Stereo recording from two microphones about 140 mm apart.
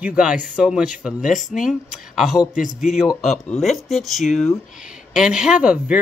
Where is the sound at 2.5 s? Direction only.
60° left (ahead or behind).